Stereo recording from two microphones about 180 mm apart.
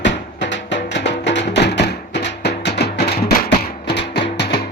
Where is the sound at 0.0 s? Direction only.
80° left.